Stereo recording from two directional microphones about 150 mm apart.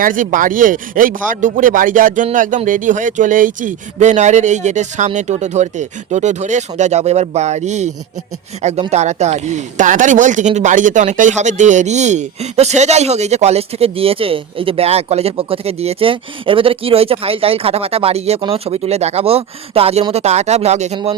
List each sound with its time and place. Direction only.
0.0 s speech: 60° right (ahead or behind)